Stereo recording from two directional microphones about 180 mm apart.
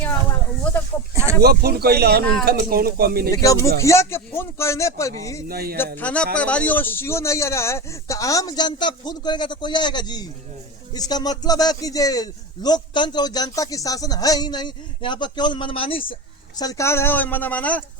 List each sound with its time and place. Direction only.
1.1 s speech: 15° right (ahead or behind)
1.4 s speech: 60° right (ahead or behind)
3.3 s speech: 20° left (ahead or behind)
5.5 s speech: 60° right (ahead or behind)
6.0 s a man's voice: 5° left (ahead or behind); by 16.1 s 30° left (ahead or behind)
16.6 s speech: 20° left (ahead or behind)